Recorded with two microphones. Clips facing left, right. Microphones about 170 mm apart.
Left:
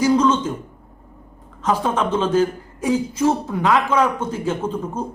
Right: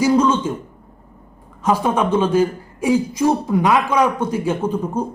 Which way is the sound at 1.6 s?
10° right (ahead or behind).